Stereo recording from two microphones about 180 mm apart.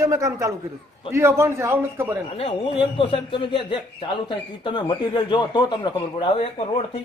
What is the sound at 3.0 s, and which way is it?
Speech, 30° left (ahead or behind).